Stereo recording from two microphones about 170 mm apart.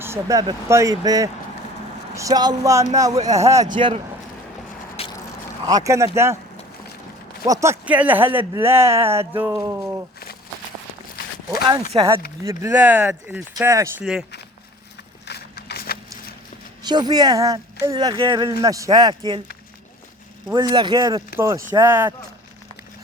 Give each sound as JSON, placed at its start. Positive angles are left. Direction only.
{"t": 0.0, "sound": "speech", "side_deg": -15}
{"t": 3.8, "sound": "speech", "side_deg": -30}
{"t": 5.0, "sound": "vehicle", "side_deg": 35}
{"t": 5.6, "sound": "speech", "side_deg": -20}
{"t": 7.4, "sound": "speech", "side_deg": -20}
{"t": 11.9, "sound": "speech", "side_deg": -15}
{"t": 14.0, "sound": "speech", "side_deg": 0}
{"t": 15.3, "sound": "a sound", "side_deg": 70}
{"t": 16.8, "sound": "speech", "side_deg": -25}
{"t": 20.5, "sound": "speech", "side_deg": -25}